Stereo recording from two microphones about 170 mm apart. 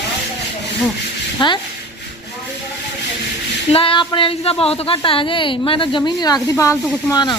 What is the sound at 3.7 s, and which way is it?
A woman's voice, 30° left (ahead or behind).